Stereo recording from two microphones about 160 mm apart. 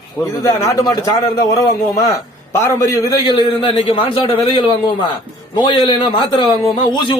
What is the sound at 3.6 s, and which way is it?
A man's voice, 35° left (ahead or behind).